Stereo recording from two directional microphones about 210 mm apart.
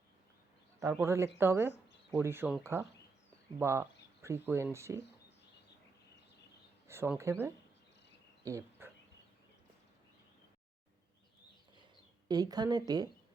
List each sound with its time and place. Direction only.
0.8 s a man's voice: 10° right (ahead or behind)
3.6 s speech: 10° right (ahead or behind)
6.8 s speech: 10° right (ahead or behind)
12.3 s a woman's voice: 20° right (ahead or behind)